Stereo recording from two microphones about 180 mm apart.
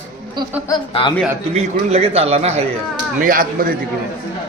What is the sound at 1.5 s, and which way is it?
A man's voice, 35° right (ahead or behind).